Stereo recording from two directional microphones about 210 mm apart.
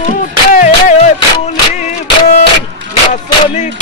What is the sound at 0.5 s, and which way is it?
Music, 35° left (ahead or behind).